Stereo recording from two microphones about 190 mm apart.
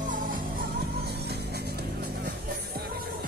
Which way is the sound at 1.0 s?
60° right (ahead or behind).